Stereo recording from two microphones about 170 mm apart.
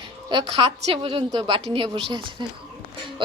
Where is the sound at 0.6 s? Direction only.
30° right (ahead or behind).